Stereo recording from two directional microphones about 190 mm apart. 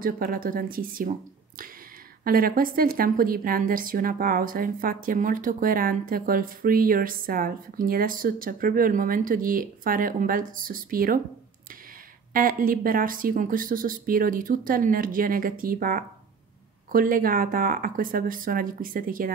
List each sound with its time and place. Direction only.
0.0 s a woman's voice: 50° right (ahead or behind)
2.2 s a woman's voice: 50° right (ahead or behind)
12.3 s a woman's voice: 50° right (ahead or behind)